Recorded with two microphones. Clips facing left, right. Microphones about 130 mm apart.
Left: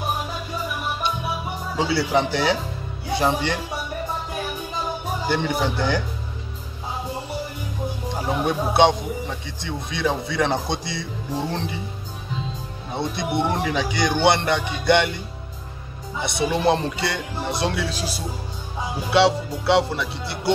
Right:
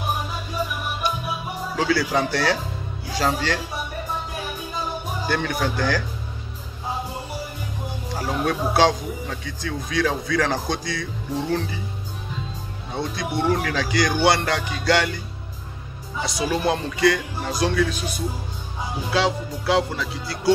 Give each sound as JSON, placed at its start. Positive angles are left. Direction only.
{"t": 1.8, "sound": "speech", "side_deg": 25}
{"t": 5.3, "sound": "speech", "side_deg": 20}
{"t": 8.1, "sound": "speech", "side_deg": 20}
{"t": 12.9, "sound": "speech", "side_deg": 25}
{"t": 16.2, "sound": "speech", "side_deg": 25}
{"t": 19.1, "sound": "music", "side_deg": 25}
{"t": 20.1, "sound": "speech", "side_deg": 25}